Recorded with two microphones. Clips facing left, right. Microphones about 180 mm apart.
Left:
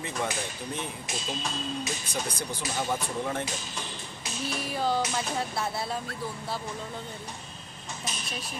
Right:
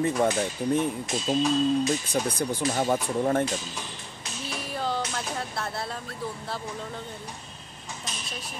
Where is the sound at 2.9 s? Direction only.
50° right (ahead or behind).